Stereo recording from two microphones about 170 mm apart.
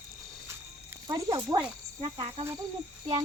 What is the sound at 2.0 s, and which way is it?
Speech, 30° right (ahead or behind).